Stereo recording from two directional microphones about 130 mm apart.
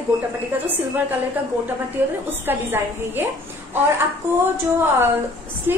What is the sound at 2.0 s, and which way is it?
A woman's voice, 15° right (ahead or behind).